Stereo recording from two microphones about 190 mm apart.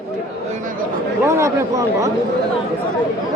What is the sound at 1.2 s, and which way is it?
Speech, 15° right (ahead or behind).